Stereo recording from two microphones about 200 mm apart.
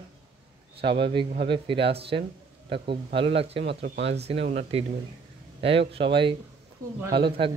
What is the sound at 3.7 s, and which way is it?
Speech, 60° right (ahead or behind).